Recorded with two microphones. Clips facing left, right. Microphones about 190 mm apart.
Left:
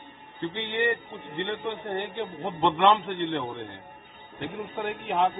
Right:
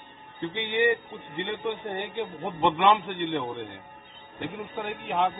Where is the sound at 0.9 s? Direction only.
15° left (ahead or behind).